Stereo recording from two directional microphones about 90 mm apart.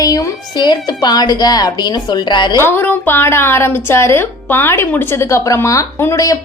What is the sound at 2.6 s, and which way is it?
A woman's voice, 25° left (ahead or behind).